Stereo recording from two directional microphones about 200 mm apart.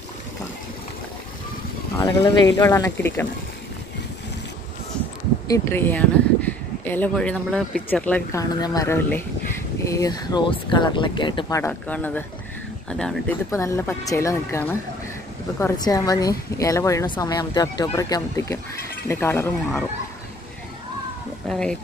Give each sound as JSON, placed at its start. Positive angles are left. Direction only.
{"t": 2.0, "sound": "speech", "side_deg": 20}
{"t": 5.5, "sound": "speech", "side_deg": 10}
{"t": 13.5, "sound": "speech", "side_deg": 15}
{"t": 21.5, "sound": "speech", "side_deg": 5}